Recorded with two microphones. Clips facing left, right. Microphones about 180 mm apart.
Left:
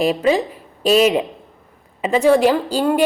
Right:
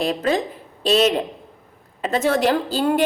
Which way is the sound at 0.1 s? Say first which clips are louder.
Left 4 dB; 5° left (ahead or behind).